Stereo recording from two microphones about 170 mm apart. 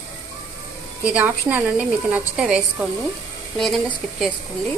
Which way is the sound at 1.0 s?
10° right (ahead or behind).